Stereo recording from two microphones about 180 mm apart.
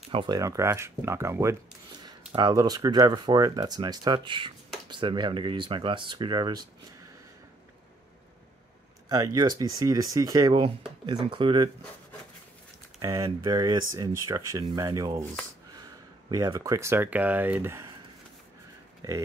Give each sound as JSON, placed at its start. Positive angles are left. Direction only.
{"t": 0.1, "sound": "speech", "side_deg": -30}
{"t": 0.4, "sound": "speech", "side_deg": -20}
{"t": 9.1, "sound": "speech", "side_deg": -20}
{"t": 13.0, "sound": "speech", "side_deg": -15}
{"t": 16.3, "sound": "speech", "side_deg": -20}